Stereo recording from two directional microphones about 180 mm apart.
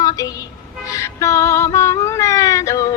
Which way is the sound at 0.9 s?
15° left (ahead or behind).